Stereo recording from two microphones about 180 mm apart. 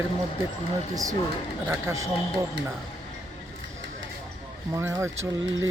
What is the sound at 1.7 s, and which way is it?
Speech, 15° right (ahead or behind).